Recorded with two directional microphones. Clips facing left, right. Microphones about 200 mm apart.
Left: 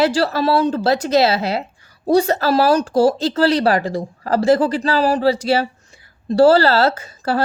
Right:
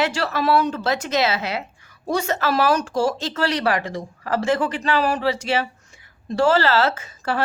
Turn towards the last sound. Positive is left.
turn(degrees=35)  # may be behind; listen again after turning